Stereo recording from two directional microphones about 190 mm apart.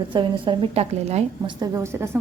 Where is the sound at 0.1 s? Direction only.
25° right (ahead or behind).